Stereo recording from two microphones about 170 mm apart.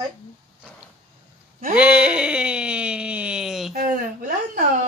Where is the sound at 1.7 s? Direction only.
5° right (ahead or behind).